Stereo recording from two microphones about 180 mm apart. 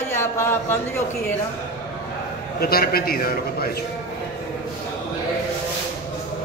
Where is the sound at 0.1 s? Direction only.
15° left (ahead or behind).